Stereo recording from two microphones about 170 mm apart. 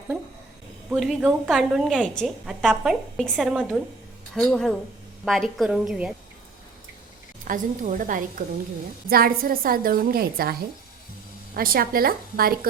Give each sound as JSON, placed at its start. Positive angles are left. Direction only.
{"t": 0.9, "sound": "a woman's voice", "side_deg": 0}
{"t": 7.4, "sound": "a woman's voice", "side_deg": -50}